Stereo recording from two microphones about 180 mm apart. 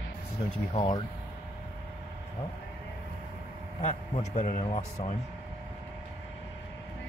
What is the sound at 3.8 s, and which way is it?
Speech, 45° left (ahead or behind).